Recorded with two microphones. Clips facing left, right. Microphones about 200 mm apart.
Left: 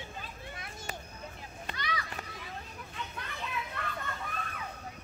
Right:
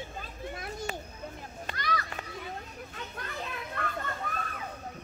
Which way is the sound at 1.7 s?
45° right (ahead or behind).